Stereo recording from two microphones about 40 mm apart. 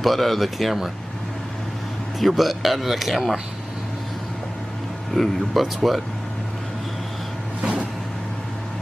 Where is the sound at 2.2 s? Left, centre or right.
Centre.